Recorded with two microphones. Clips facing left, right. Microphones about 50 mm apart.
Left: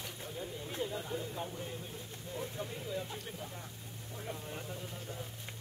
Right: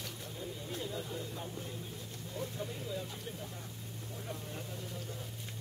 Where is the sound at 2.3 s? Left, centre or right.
Left.